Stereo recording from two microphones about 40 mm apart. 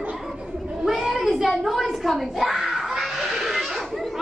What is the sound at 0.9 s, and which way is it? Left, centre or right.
Child singing, centre.